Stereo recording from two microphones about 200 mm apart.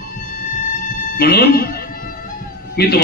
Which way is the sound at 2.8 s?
50° left (ahead or behind).